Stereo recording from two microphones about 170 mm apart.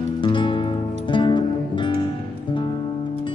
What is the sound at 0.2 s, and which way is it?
Music, 30° left (ahead or behind).